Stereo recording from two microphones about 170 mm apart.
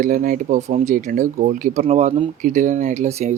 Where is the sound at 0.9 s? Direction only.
50° right (ahead or behind).